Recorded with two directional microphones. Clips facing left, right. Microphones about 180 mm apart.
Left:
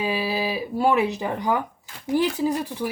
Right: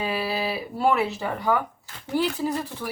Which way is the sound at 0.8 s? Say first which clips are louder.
Left 2 dB; 15° left (ahead or behind).